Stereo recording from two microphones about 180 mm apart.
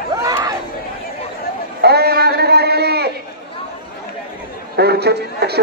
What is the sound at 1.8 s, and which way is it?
A man's voice, 60° right (ahead or behind).